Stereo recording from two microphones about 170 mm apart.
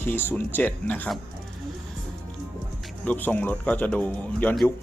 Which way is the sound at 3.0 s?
10° left (ahead or behind).